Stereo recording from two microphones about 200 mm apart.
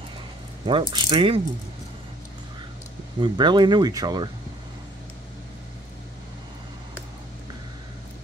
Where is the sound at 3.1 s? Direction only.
25° right (ahead or behind).